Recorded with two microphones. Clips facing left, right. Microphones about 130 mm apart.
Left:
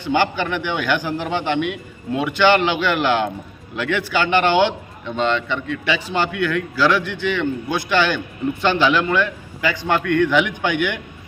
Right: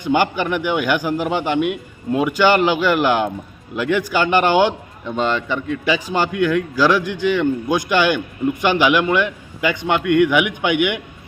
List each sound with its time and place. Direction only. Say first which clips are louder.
0.0 s a man's voice: right 2 dB; 15° right (ahead or behind)
1.6 s a man's voice: right 4 dB; 45° right (ahead or behind)
2.9 s a man's voice: right 2 dB; 10° right (ahead or behind)
5.6 s a man's voice: right 3 dB; 40° right (ahead or behind)
6.1 s a man's voice: right 3 dB; 10° right (ahead or behind)